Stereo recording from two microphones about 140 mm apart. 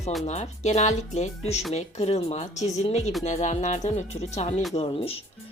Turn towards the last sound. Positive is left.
turn(degrees=45)  # may be behind; listen again after turning